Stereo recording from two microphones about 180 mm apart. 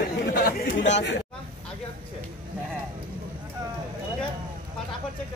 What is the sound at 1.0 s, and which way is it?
Speech, 75° left (ahead or behind).